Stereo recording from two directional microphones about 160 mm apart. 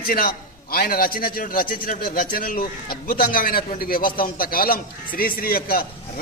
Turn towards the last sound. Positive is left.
turn(degrees=65)  # may be behind; listen again after turning